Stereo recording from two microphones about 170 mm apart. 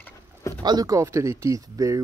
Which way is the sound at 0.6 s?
25° right (ahead or behind).